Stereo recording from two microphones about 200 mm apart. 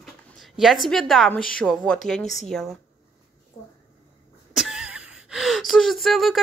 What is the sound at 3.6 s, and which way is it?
Speech, 25° left (ahead or behind).